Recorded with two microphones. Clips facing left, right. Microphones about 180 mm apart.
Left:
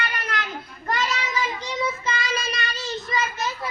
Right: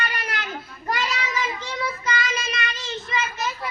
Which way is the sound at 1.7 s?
30° left (ahead or behind).